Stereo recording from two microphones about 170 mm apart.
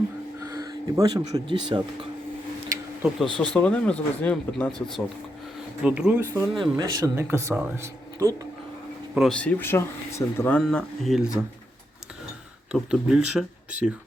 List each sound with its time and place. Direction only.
0.3 s a sound: 20° right (ahead or behind)
1.2 s speech: 30° right (ahead or behind)
3.3 s speech: 5° left (ahead or behind)
6.6 s speech: 25° right (ahead or behind)
9.1 s speech: 5° left (ahead or behind)
12.7 s speech: 5° right (ahead or behind)